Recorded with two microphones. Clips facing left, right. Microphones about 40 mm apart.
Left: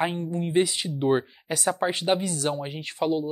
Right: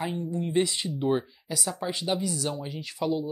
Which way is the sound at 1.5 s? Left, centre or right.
Left.